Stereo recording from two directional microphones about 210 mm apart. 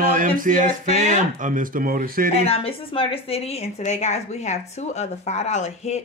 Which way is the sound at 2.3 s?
30° left (ahead or behind).